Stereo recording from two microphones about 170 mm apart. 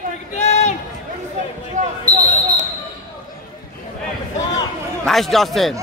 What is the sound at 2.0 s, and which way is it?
Basketball bounce, 20° right (ahead or behind).